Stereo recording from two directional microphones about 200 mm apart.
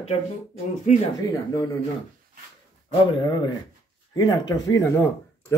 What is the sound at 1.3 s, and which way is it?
Speech, 15° left (ahead or behind).